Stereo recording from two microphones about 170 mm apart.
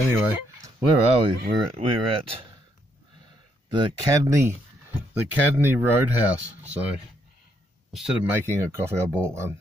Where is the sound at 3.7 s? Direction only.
20° right (ahead or behind).